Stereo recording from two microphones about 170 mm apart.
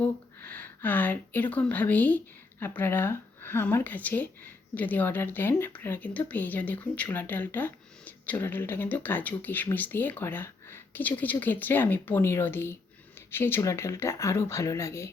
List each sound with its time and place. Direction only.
0.0 s speech: 10° left (ahead or behind)